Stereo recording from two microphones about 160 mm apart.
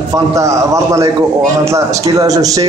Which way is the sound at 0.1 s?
20° right (ahead or behind).